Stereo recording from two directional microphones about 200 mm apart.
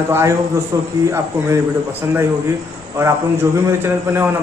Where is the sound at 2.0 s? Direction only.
15° right (ahead or behind).